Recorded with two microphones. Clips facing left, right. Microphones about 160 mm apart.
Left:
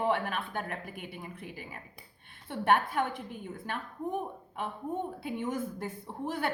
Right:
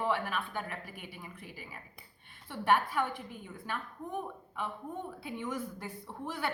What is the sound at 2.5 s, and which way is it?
Speech, 55° left (ahead or behind).